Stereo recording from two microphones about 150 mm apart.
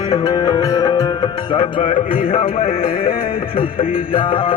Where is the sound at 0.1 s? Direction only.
30° left (ahead or behind).